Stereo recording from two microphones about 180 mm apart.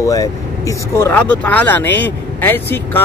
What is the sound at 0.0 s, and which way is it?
Speech, 15° left (ahead or behind).